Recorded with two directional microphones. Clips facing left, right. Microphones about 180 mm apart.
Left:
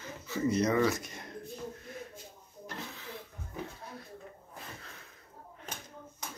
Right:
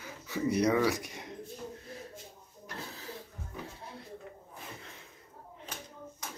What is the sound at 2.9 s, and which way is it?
Music, 35° right (ahead or behind).